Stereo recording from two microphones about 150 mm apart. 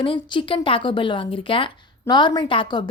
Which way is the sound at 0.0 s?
35° left (ahead or behind).